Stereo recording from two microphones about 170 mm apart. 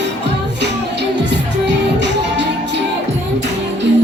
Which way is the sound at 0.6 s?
90° right.